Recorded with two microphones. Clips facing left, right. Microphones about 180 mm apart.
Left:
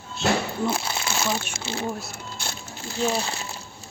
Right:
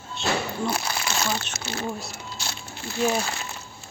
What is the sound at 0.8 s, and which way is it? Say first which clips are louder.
Crumpling: even; 25° left (ahead or behind).